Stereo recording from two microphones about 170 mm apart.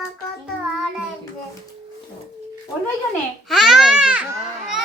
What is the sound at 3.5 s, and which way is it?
Speech, centre (ahead or behind).